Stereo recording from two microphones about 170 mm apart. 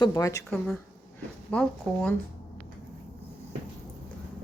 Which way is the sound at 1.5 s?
5° left (ahead or behind).